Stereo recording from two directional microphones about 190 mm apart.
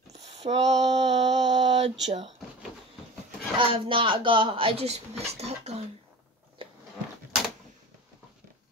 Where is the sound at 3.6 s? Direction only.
25° right (ahead or behind).